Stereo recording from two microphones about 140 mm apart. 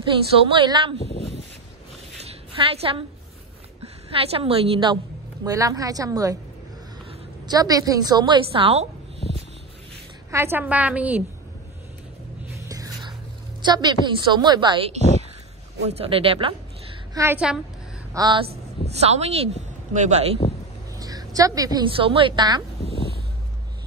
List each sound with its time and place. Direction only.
0.0 s a woman's voice: 35° right (ahead or behind)
2.2 s a sound: 45° right (ahead or behind)
3.8 s a woman's voice: 45° right (ahead or behind)
5.4 s a woman's voice: 25° right (ahead or behind)
7.4 s a woman's voice: 25° right (ahead or behind); by 8.8 s 45° right (ahead or behind)
10.3 s a woman's voice: 15° right (ahead or behind)
12.6 s whispering: 25° right (ahead or behind)
13.6 s a woman's voice: 30° right (ahead or behind)
15.8 s a woman's voice: 45° right (ahead or behind)
17.1 s a woman's voice: 20° right (ahead or behind)
18.9 s speech: 50° right (ahead or behind)
21.0 s a sound: 25° right (ahead or behind)
21.8 s a woman's voice: 40° right (ahead or behind)